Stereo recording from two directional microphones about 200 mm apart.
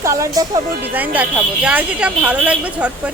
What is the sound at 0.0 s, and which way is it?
A woman's voice, 15° right (ahead or behind).